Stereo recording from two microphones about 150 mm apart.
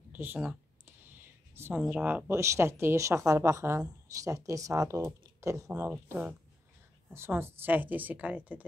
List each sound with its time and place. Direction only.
0.1 s a woman's voice: 10° right (ahead or behind)